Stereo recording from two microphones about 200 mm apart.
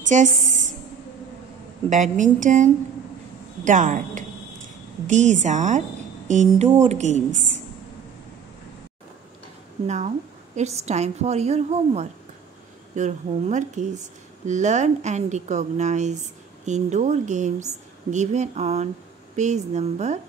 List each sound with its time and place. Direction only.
0.1 s a woman's voice: 35° right (ahead or behind)
1.9 s speech: 40° right (ahead or behind)
9.8 s speech: 35° right (ahead or behind)